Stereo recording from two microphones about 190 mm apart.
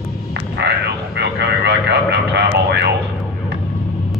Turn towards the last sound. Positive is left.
turn(degrees=-65)  # may be behind; listen again after turning